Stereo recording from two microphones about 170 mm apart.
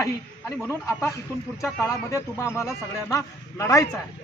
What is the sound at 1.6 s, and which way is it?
A man's voice, 15° left (ahead or behind).